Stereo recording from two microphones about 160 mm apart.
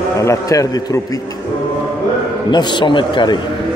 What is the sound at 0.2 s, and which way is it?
A man's voice, 20° left (ahead or behind).